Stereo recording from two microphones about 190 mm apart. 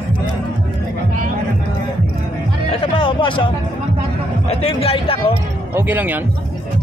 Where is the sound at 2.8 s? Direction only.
25° left (ahead or behind).